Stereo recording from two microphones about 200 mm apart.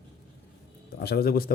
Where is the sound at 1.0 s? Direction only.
50° left (ahead or behind).